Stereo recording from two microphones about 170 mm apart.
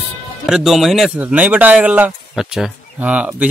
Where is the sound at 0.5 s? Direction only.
Centre (ahead or behind).